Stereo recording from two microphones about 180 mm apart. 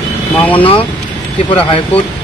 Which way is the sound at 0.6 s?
30° left (ahead or behind).